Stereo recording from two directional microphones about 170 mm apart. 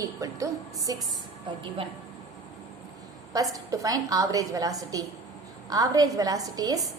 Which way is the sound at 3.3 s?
20° right (ahead or behind).